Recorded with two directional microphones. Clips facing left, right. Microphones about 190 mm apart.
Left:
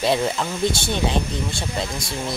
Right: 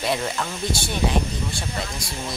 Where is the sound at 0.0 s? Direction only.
25° left (ahead or behind).